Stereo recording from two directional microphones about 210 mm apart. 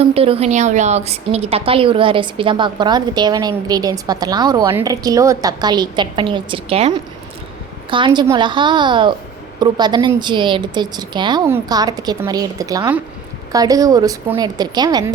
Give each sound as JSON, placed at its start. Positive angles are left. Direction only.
{"t": 0.0, "sound": "a woman's voice", "side_deg": -30}